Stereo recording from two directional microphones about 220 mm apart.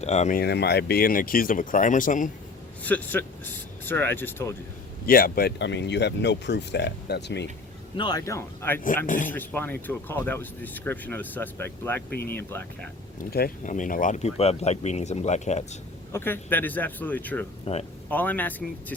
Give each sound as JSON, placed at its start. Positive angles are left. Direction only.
{"t": 0.0, "sound": "speech", "side_deg": 30}
{"t": 2.8, "sound": "speech", "side_deg": 5}
{"t": 5.0, "sound": "speech", "side_deg": 40}
{"t": 7.9, "sound": "speech", "side_deg": 20}
{"t": 9.0, "sound": "speech", "side_deg": 35}
{"t": 9.3, "sound": "speech", "side_deg": 10}
{"t": 13.1, "sound": "speech", "side_deg": 40}
{"t": 16.1, "sound": "speech", "side_deg": 10}
{"t": 17.7, "sound": "speech", "side_deg": 25}
{"t": 18.1, "sound": "speech", "side_deg": 5}